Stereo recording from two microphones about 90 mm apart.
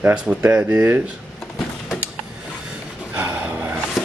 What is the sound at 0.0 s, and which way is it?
Speech, 10° right (ahead or behind).